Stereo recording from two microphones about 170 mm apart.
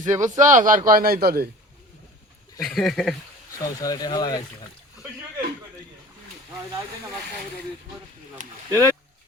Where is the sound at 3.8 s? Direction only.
25° left (ahead or behind).